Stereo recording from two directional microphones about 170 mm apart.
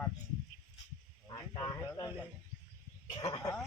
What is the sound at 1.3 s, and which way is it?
Speech, 25° left (ahead or behind).